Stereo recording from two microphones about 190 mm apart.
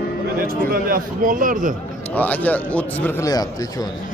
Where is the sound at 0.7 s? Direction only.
45° right (ahead or behind).